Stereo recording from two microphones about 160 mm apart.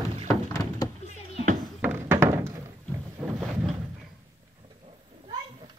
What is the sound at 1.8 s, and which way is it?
Thunk, 10° right (ahead or behind).